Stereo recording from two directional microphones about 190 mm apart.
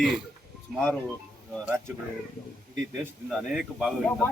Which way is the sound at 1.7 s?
15° right (ahead or behind).